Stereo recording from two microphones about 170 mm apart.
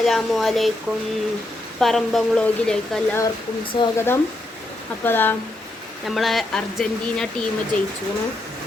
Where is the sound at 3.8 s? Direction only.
25° left (ahead or behind).